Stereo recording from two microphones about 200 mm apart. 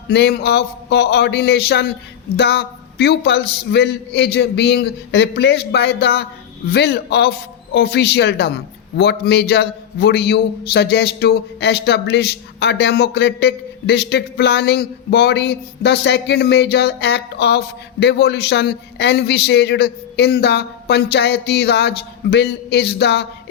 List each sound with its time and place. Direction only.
0.1 s a man's voice: 55° left (ahead or behind)